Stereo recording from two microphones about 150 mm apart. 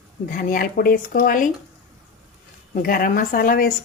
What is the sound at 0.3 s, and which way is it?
Speech, 65° left (ahead or behind).